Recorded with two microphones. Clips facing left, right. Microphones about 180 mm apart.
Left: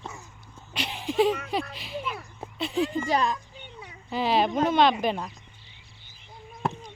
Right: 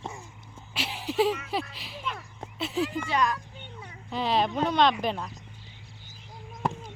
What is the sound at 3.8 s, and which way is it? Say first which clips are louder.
Cat: left 3 dB; 5° left (ahead or behind).